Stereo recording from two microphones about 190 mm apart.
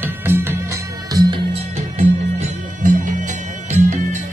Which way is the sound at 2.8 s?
45° right (ahead or behind).